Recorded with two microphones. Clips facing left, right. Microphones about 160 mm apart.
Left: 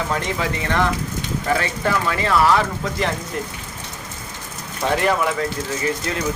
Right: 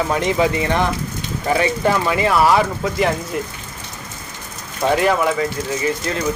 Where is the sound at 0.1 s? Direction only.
15° right (ahead or behind).